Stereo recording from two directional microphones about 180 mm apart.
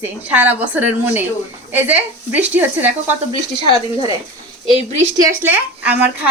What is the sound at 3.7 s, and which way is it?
Speech, 20° right (ahead or behind).